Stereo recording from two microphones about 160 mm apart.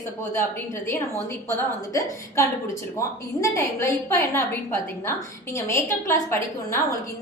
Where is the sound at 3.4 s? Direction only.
20° left (ahead or behind).